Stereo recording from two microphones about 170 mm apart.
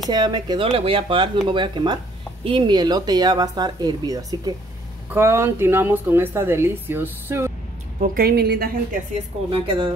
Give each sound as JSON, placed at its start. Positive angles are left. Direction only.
{"t": 0.1, "sound": "a woman's voice", "side_deg": -25}
{"t": 8.0, "sound": "a woman's voice", "side_deg": -60}
{"t": 9.5, "sound": "speech", "side_deg": -30}